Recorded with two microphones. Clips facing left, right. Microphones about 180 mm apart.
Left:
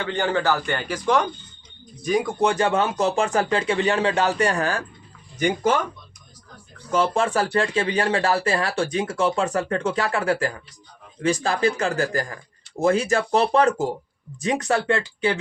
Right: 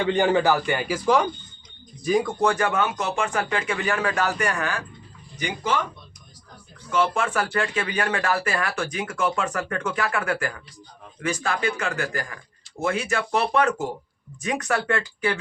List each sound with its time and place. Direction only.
0.0 s a man's voice: 15° right (ahead or behind)
2.4 s speech: 25° left (ahead or behind)
5.4 s speech: 50° left (ahead or behind)
6.9 s speech: 35° left (ahead or behind)